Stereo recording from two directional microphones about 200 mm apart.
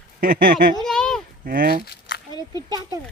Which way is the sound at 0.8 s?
5° left (ahead or behind).